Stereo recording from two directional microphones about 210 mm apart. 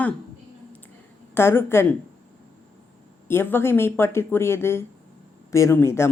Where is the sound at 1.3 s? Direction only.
10° left (ahead or behind).